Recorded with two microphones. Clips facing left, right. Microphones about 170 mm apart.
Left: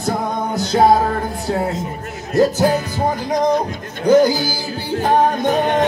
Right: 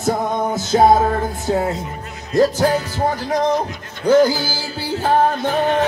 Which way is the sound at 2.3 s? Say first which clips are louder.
Left 1 dB; 10° left (ahead or behind).